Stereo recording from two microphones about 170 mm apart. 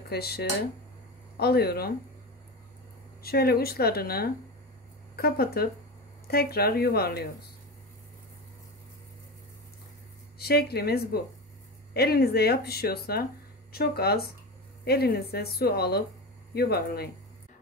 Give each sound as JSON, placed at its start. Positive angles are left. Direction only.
{"t": 0.1, "sound": "speech", "side_deg": 70}
{"t": 3.2, "sound": "speech", "side_deg": 65}
{"t": 10.4, "sound": "speech", "side_deg": 70}